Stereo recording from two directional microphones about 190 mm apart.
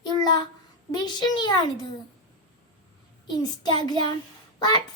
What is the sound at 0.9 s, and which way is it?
Speech, 20° left (ahead or behind).